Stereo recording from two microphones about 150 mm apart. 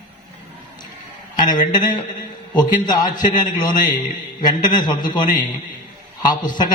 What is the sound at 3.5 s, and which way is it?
A man's voice, 30° left (ahead or behind).